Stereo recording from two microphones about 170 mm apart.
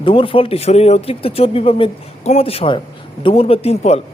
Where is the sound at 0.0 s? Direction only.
30° left (ahead or behind).